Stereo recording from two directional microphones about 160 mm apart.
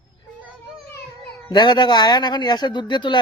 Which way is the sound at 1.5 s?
30° left (ahead or behind).